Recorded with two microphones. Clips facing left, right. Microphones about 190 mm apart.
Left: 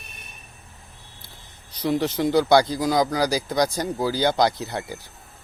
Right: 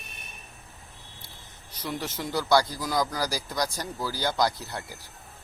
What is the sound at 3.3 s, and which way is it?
Speech, 20° left (ahead or behind).